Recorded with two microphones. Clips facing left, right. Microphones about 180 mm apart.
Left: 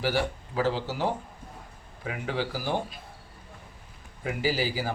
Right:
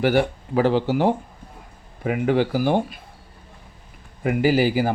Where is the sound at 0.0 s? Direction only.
60° right (ahead or behind).